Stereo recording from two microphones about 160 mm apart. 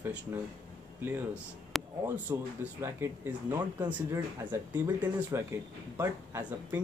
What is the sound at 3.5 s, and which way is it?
Speech, 25° right (ahead or behind).